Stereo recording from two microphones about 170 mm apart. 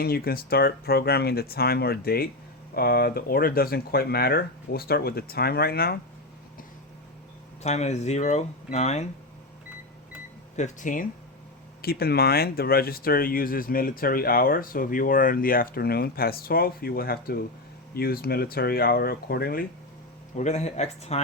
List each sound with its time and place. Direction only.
0.0 s speech: 65° left (ahead or behind)
7.6 s speech: 40° left (ahead or behind)
10.6 s speech: 50° left (ahead or behind)
11.8 s speech: 65° left (ahead or behind)
20.3 s speech: 40° left (ahead or behind)